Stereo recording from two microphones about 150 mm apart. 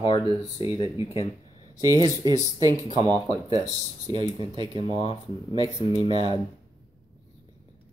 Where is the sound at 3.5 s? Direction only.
45° left (ahead or behind).